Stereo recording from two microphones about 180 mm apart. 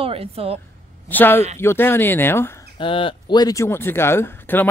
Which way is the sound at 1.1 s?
10° left (ahead or behind).